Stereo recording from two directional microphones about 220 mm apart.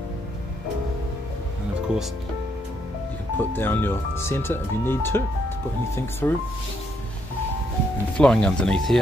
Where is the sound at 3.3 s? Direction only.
10° left (ahead or behind).